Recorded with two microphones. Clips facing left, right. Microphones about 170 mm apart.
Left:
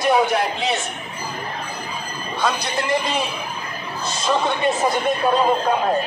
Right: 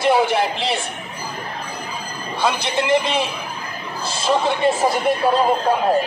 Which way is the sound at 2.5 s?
25° right (ahead or behind).